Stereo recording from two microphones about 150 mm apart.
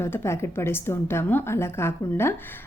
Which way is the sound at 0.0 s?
20° left (ahead or behind).